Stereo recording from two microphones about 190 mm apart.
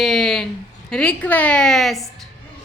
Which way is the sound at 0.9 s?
5° left (ahead or behind).